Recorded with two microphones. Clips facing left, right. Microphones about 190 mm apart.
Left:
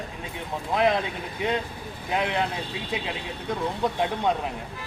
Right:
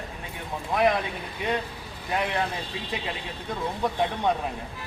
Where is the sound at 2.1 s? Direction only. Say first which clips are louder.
Left 1 dB; 20° left (ahead or behind).